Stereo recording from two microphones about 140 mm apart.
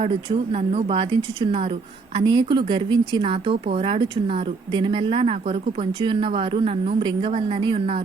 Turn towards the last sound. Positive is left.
turn(degrees=-40)  # may be behind; listen again after turning